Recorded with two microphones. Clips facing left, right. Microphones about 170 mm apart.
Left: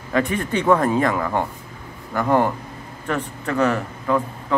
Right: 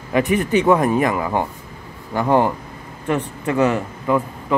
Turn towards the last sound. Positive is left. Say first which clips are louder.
# right 2 dB
turn(degrees=-15)  # may be behind; listen again after turning